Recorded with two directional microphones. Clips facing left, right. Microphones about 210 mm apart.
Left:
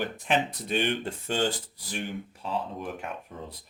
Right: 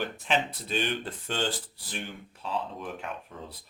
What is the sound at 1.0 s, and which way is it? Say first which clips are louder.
Speech: left 4 dB; 10° left (ahead or behind).